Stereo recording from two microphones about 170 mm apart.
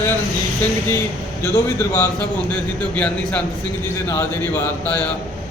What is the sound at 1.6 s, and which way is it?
Speech, 15° left (ahead or behind).